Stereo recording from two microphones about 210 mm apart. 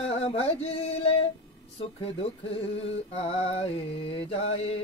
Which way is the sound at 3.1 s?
30° left (ahead or behind).